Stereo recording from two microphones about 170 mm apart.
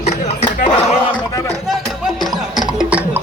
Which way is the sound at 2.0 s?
Centre (ahead or behind).